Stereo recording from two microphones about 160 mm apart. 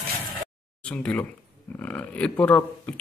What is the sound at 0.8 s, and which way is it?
Speech, 10° left (ahead or behind).